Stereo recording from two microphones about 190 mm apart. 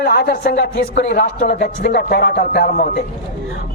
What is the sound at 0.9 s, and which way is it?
A man's voice, 40° left (ahead or behind).